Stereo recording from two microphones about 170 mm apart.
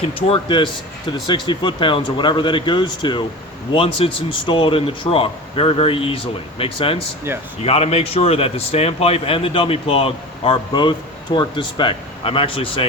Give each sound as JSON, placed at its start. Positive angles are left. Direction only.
{"t": 0.0, "sound": "a man's voice", "side_deg": 35}
{"t": 7.3, "sound": "speech", "side_deg": -15}
{"t": 7.6, "sound": "a man's voice", "side_deg": 35}